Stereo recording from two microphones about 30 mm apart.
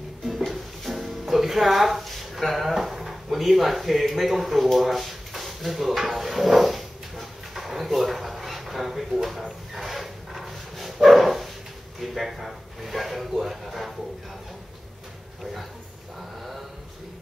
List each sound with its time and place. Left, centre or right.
0.5 s music: centre
4.1 s speech: centre
9.8 s dog: centre
12.0 s speech: centre